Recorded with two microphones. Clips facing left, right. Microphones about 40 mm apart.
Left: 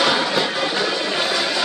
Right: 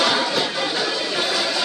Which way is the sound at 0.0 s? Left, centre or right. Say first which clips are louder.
Left 1 dB; centre.